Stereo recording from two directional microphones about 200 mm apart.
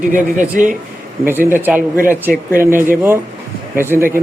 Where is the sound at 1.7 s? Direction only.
45° right (ahead or behind).